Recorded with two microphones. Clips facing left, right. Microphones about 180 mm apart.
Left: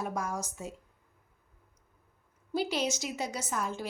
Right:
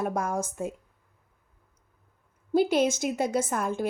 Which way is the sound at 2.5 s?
50° right (ahead or behind).